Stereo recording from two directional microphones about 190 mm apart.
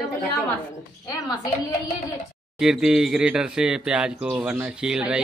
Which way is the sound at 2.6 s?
Centre (ahead or behind).